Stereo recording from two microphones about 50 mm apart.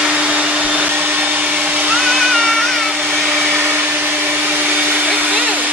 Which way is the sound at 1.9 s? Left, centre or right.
Centre.